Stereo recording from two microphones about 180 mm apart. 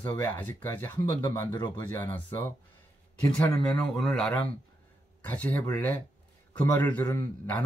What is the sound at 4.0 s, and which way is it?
Speech, centre (ahead or behind).